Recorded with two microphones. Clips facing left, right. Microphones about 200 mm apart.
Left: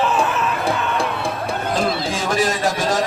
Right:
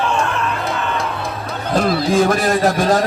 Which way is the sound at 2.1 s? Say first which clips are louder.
Right 6 dB; 60° right (ahead or behind).